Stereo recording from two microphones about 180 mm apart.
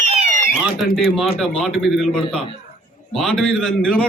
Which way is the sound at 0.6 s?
Centre (ahead or behind).